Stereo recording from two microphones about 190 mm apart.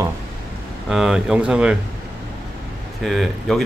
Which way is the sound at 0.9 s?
Centre (ahead or behind).